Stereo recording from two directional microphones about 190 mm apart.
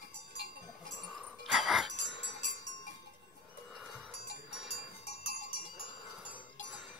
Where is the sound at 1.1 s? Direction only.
Centre (ahead or behind).